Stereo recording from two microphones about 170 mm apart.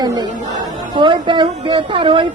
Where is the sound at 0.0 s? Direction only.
25° right (ahead or behind).